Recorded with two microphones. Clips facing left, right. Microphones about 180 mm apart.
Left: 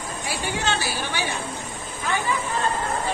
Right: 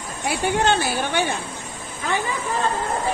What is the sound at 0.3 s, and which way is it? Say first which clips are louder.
Speech: right 7 dB; 55° right (ahead or behind).